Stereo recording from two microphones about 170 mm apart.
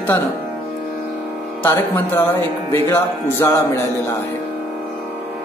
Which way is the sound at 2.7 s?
15° left (ahead or behind).